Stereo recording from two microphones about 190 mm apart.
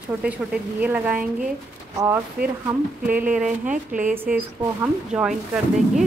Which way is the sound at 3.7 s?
45° right (ahead or behind).